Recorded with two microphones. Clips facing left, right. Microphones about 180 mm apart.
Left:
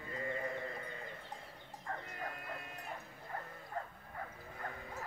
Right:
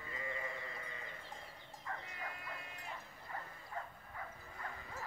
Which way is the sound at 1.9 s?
45° left (ahead or behind).